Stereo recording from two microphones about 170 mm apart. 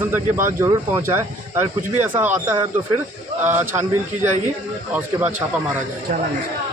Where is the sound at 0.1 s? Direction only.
15° right (ahead or behind).